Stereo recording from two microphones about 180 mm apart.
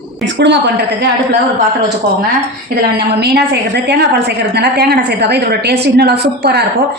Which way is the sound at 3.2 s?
65° right (ahead or behind).